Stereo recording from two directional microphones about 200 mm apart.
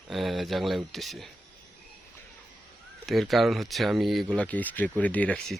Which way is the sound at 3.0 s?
Centre (ahead or behind).